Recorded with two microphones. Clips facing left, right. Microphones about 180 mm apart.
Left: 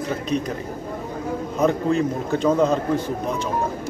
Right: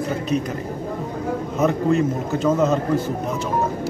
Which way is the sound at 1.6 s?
5° right (ahead or behind).